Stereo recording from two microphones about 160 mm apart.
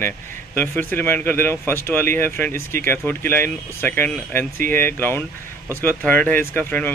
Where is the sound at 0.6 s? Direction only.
15° left (ahead or behind).